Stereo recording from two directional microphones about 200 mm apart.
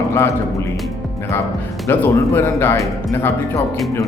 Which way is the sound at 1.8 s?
10° left (ahead or behind).